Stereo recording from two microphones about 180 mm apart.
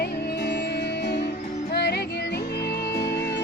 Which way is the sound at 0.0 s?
65° left (ahead or behind).